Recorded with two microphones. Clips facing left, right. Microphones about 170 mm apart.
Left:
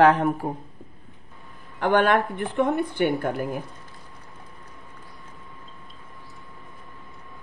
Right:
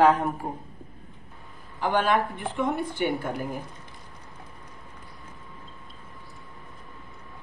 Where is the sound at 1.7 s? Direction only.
65° left (ahead or behind).